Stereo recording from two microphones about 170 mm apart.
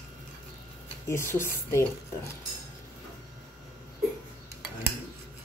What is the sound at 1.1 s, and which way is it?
Speech, 15° left (ahead or behind).